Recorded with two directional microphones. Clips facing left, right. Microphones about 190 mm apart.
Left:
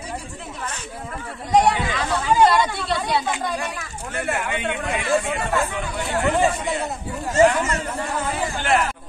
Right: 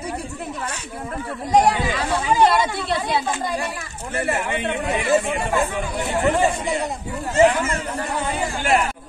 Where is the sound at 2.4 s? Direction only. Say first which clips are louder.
Even; centre (ahead or behind).